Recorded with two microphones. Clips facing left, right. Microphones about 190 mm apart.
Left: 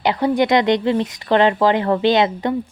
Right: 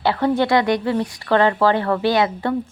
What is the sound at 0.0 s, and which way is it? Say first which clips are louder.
A woman's voice: left 1 dB; 15° left (ahead or behind).